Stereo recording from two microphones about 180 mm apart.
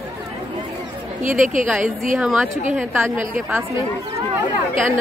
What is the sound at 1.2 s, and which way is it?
Speech, 45° right (ahead or behind).